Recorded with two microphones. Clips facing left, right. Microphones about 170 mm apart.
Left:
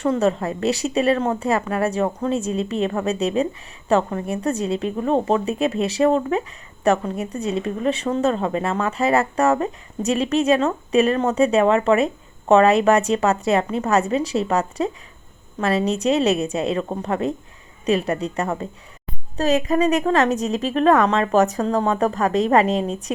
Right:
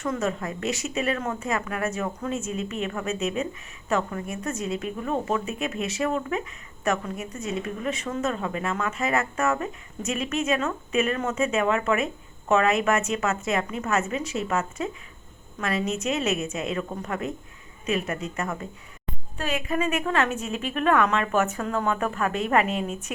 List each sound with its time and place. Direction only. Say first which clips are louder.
0.0 s speech: left 8 dB; 30° left (ahead or behind)